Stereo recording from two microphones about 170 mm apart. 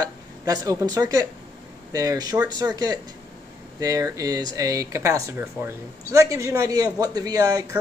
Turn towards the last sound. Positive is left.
turn(degrees=-20)  # may be behind; listen again after turning